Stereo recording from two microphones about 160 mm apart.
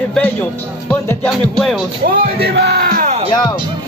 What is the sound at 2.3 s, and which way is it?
Speech, 85° right.